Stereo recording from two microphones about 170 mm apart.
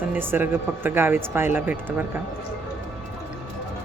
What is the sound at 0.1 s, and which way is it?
A woman's voice, 10° right (ahead or behind).